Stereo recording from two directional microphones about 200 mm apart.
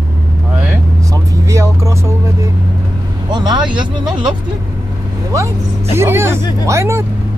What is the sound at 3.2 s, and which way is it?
Speech, 20° right (ahead or behind).